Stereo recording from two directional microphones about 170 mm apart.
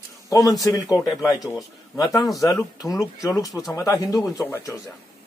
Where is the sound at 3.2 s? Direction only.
20° left (ahead or behind).